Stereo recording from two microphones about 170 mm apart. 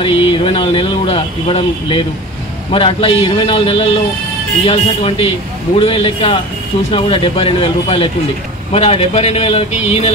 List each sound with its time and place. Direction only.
0.0 s speech: 30° left (ahead or behind)